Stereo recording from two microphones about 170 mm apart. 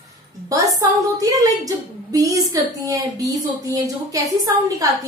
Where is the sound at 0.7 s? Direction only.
20° right (ahead or behind).